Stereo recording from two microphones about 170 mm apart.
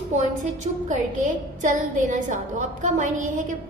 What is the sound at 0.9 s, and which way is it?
A woman's voice, 45° right (ahead or behind).